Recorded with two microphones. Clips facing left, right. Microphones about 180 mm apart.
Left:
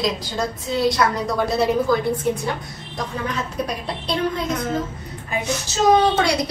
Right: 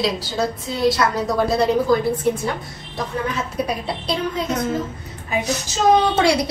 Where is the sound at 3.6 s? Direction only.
10° right (ahead or behind).